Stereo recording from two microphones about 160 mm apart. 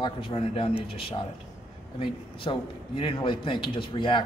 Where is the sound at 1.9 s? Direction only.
30° left (ahead or behind).